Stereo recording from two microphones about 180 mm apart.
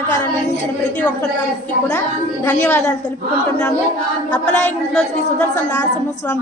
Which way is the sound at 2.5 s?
10° left (ahead or behind).